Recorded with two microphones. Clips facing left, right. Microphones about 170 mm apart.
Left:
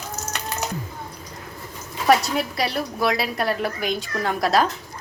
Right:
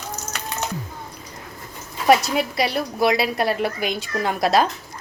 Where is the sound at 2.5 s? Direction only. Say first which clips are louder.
Right 2 dB; 20° right (ahead or behind).